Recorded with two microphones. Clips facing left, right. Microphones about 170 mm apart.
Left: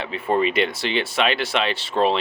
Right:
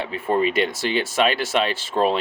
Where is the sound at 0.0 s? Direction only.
45° right (ahead or behind).